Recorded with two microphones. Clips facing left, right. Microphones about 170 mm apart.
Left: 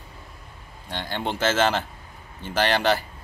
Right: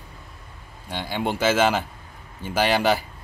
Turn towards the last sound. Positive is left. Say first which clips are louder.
# right 1 dB
turn(degrees=-10)  # may be behind; listen again after turning